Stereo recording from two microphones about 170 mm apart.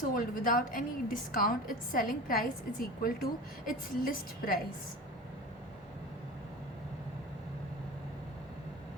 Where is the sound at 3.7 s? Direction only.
55° left (ahead or behind).